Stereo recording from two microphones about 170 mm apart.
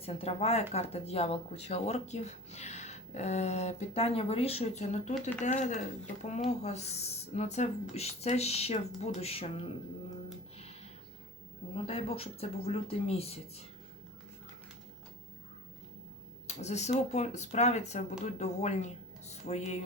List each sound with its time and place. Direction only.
0.0 s speech: 35° left (ahead or behind)
11.7 s speech: 35° left (ahead or behind)
16.5 s speech: 40° left (ahead or behind)